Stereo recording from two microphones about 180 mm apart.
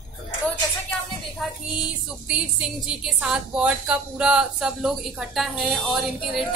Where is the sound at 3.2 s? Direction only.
5° right (ahead or behind).